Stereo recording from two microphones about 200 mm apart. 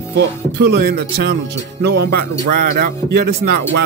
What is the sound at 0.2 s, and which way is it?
Speech, 55° right (ahead or behind).